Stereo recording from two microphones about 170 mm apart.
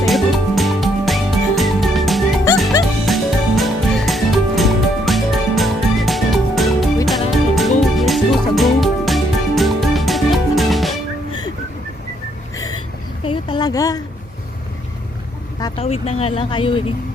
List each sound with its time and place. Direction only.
0.0 s music: centre (ahead or behind)
13.2 s a sound: 30° left (ahead or behind)
15.8 s vehicle: 35° left (ahead or behind)